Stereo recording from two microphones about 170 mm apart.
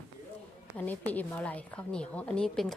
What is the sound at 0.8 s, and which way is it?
A woman's voice, 10° left (ahead or behind).